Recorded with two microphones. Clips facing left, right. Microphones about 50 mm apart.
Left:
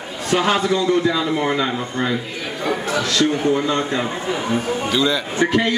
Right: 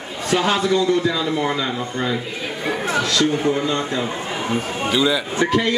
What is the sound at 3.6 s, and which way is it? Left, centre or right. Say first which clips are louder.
Speech: left 2 dB; left.